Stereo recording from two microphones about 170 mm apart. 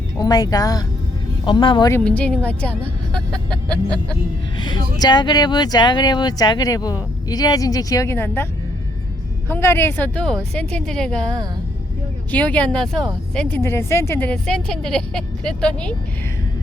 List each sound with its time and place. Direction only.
0.2 s speech: 25° left (ahead or behind)
1.9 s speech: 5° left (ahead or behind)
4.5 s speech: 25° left (ahead or behind)
9.5 s a woman's voice: 15° left (ahead or behind)
12.3 s a woman's voice: 10° left (ahead or behind)
13.6 s speech: 15° left (ahead or behind)